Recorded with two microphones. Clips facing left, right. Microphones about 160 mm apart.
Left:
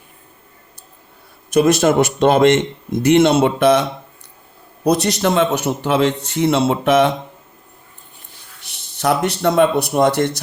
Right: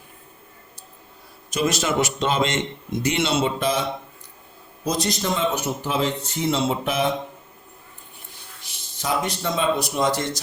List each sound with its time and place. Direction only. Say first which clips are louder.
1.5 s a man's voice: left 10 dB; 60° left (ahead or behind); by 7.1 s 75° left (ahead or behind)
8.6 s speech: left 10 dB; 70° left (ahead or behind)